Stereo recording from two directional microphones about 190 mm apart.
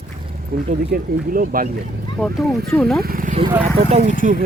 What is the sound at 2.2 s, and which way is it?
Speech, centre (ahead or behind).